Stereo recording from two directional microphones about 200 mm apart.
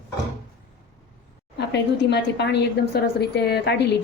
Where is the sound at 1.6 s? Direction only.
60° left (ahead or behind).